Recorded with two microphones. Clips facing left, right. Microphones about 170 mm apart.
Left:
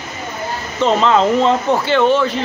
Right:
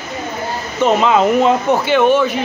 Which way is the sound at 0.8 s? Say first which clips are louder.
Right 1 dB; 15° right (ahead or behind).